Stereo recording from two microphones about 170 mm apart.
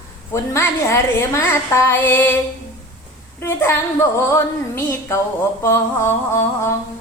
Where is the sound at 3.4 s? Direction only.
15° left (ahead or behind).